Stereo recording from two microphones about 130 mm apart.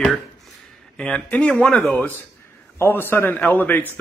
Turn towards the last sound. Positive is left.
turn(degrees=15)  # may be behind; listen again after turning